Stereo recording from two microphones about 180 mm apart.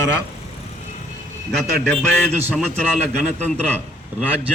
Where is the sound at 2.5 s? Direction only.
5° left (ahead or behind).